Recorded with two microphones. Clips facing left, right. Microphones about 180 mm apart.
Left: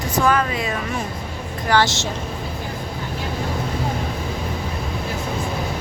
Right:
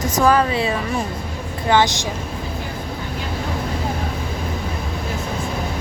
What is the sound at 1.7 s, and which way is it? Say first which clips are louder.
Speech: right 2 dB; 15° right (ahead or behind).